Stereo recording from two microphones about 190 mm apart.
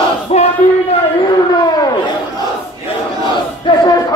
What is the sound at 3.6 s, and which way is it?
Crowd, 20° left (ahead or behind).